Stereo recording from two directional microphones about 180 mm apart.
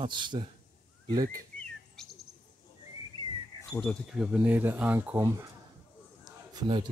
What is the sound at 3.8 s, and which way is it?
Speech, centre (ahead or behind).